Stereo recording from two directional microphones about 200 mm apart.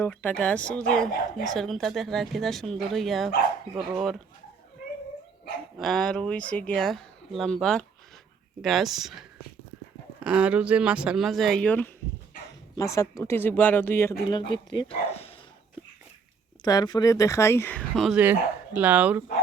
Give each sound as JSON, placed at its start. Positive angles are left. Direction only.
{"t": 0.0, "sound": "speech", "side_deg": 10}
{"t": 5.8, "sound": "speech", "side_deg": 0}
{"t": 10.2, "sound": "speech", "side_deg": -5}
{"t": 14.3, "sound": "speech", "side_deg": 20}
{"t": 16.6, "sound": "speech", "side_deg": 20}